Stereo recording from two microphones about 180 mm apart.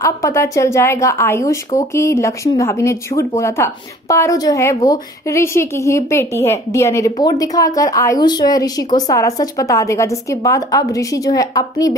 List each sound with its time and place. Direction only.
0.0 s speech: 15° left (ahead or behind)